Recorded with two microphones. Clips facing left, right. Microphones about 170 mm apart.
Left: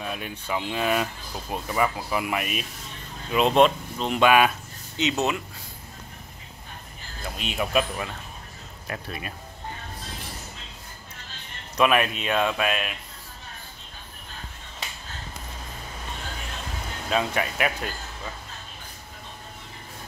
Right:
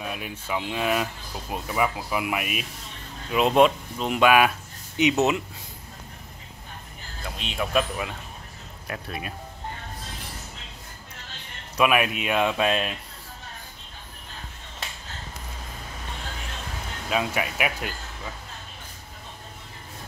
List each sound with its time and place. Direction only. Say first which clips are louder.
0.0 s speech: left 1 dB; 5° right (ahead or behind)
4.9 s speech: right 4 dB; 15° right (ahead or behind)
7.2 s speech: left 1 dB; 5° left (ahead or behind)
8.8 s speech: right 1 dB; centre (ahead or behind)
11.7 s speech: even; 10° right (ahead or behind)
12.5 s speech: right 3 dB; 30° right (ahead or behind)
17.1 s speech: left 1 dB; 5° right (ahead or behind)